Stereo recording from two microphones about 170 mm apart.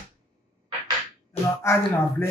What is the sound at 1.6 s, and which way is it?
Speech, 15° left (ahead or behind).